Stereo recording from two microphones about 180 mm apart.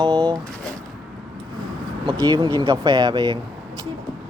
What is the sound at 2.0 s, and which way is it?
Speech, 25° right (ahead or behind).